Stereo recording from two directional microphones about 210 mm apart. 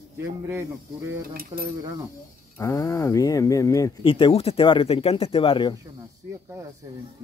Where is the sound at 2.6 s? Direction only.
15° left (ahead or behind).